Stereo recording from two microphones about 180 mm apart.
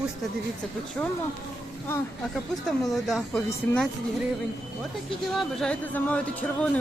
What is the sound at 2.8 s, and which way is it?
Speech, centre (ahead or behind).